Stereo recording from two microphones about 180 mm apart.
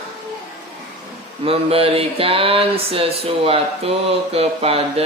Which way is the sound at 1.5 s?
35° right (ahead or behind).